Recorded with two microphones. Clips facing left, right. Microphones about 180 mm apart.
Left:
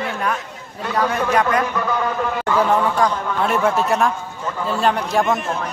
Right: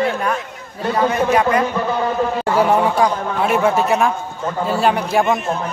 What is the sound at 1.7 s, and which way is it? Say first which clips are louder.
Speech: right 3 dB; 30° right (ahead or behind).